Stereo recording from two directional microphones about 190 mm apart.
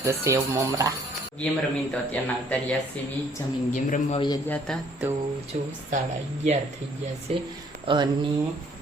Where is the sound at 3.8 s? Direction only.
40° left (ahead or behind).